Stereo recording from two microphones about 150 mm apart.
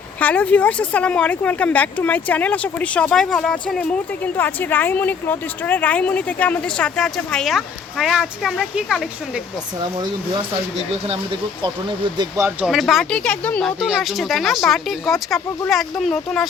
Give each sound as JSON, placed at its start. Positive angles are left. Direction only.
{"t": 0.2, "sound": "speech", "side_deg": 10}
{"t": 11.1, "sound": "speech", "side_deg": -35}
{"t": 12.5, "sound": "speech", "side_deg": 0}